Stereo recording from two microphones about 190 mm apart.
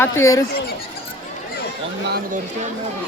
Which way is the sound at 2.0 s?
55° right (ahead or behind).